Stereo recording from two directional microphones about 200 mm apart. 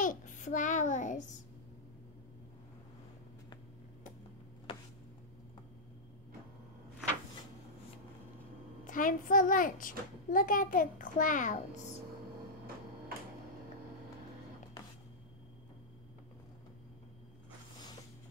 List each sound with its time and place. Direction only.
0.0 s a child's voice: 40° left (ahead or behind)
8.8 s a child's voice: 40° left (ahead or behind)